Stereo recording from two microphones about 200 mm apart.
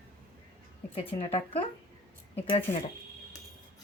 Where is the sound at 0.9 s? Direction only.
30° left (ahead or behind).